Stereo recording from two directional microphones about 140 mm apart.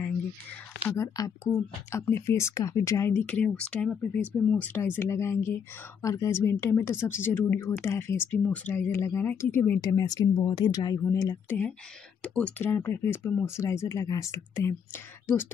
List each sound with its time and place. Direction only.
0.8 s speech: 20° left (ahead or behind)
9.8 s speech: 25° left (ahead or behind)
12.2 s speech: 10° left (ahead or behind)